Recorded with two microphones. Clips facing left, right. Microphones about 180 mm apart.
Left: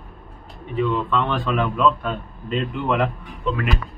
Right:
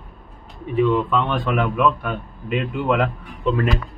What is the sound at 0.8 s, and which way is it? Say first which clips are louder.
A man's voice: right 3 dB; 10° right (ahead or behind).